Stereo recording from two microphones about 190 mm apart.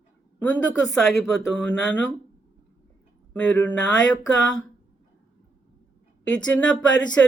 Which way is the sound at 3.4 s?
5° left (ahead or behind).